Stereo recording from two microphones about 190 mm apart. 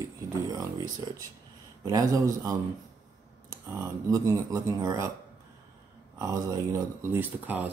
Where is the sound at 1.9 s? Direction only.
20° right (ahead or behind).